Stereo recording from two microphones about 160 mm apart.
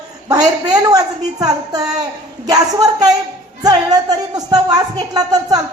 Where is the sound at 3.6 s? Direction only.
25° right (ahead or behind).